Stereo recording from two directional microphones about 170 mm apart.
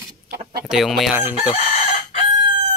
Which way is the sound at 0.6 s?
Centre (ahead or behind).